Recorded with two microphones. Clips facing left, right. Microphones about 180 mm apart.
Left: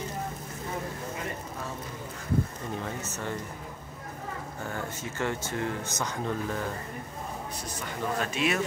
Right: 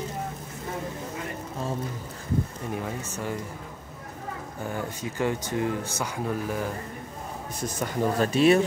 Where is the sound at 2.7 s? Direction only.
10° right (ahead or behind).